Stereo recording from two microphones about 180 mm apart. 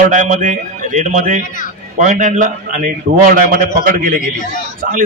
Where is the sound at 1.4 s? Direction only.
45° left (ahead or behind).